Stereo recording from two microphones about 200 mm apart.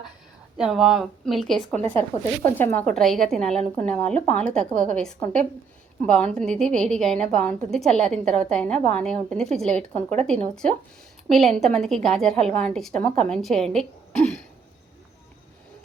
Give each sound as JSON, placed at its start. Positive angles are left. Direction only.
{"t": 0.5, "sound": "a woman's voice", "side_deg": 0}
{"t": 9.9, "sound": "speech", "side_deg": -30}
{"t": 10.5, "sound": "a woman's voice", "side_deg": 5}